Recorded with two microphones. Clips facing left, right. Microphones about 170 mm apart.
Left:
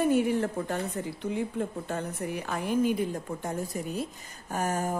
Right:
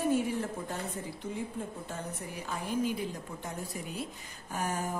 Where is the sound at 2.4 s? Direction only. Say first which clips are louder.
Left 5 dB; 60° left (ahead or behind).